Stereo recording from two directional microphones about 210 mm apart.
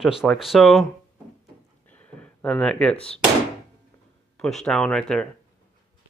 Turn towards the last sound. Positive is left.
turn(degrees=5)  # may be behind; listen again after turning